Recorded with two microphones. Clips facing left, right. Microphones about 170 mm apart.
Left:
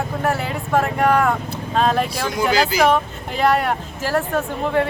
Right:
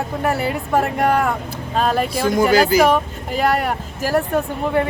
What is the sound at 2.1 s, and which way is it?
Speech, 50° right (ahead or behind).